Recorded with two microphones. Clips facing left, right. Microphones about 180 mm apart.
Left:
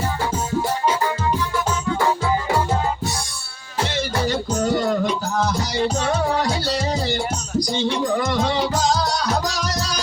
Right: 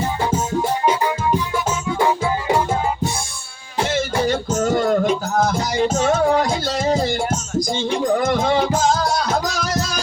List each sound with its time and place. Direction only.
2.5 s music: 20° right (ahead or behind)
4.7 s music: 45° right (ahead or behind)
7.8 s music: 40° left (ahead or behind)
8.3 s music: 45° right (ahead or behind)
8.7 s music: 40° left (ahead or behind)